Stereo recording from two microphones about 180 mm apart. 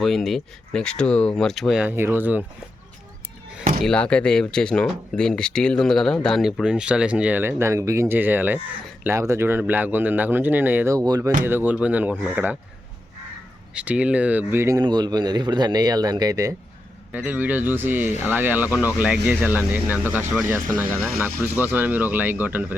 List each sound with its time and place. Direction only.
0.0 s speech: centre (ahead or behind)
3.8 s speech: 5° left (ahead or behind); by 12.5 s 10° right (ahead or behind)
13.7 s speech: 5° right (ahead or behind)
17.1 s speech: 10° right (ahead or behind)
21.4 s speech: 10° right (ahead or behind)